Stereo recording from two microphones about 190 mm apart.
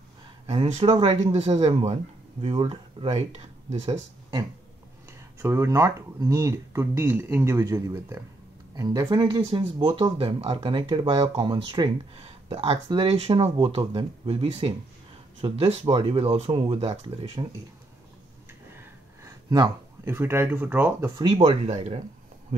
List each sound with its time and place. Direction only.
0.5 s speech: 30° right (ahead or behind)
5.4 s speech: 15° right (ahead or behind); by 17.5 s 30° right (ahead or behind)
18.7 s a sound: 15° right (ahead or behind)
21.2 s speech: 25° right (ahead or behind)